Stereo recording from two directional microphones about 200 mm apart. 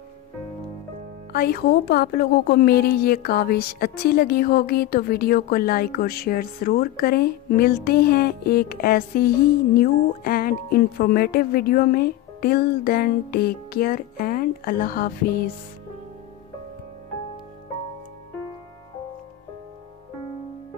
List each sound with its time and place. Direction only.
1.3 s a woman's voice: 50° left (ahead or behind)